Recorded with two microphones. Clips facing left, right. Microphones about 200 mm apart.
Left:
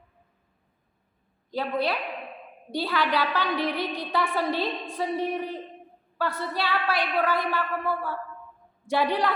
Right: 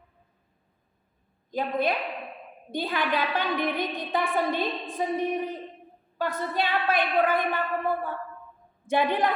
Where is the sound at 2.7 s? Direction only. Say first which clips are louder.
Left 1 dB; 20° right (ahead or behind).